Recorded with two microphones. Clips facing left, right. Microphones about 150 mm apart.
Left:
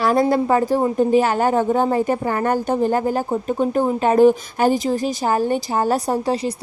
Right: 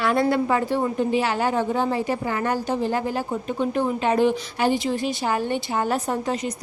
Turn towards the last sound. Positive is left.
turn(degrees=35)  # may be behind; listen again after turning